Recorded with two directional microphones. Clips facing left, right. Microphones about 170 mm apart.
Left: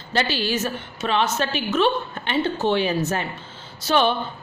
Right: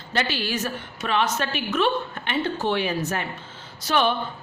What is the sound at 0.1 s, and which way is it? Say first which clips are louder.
A woman's voice: left 3 dB; 30° left (ahead or behind).